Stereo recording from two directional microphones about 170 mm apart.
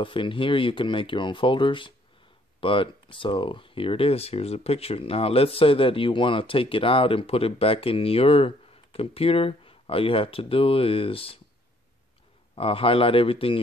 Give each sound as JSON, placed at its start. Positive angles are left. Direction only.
{"t": 0.0, "sound": "speech", "side_deg": 30}
{"t": 12.5, "sound": "speech", "side_deg": 35}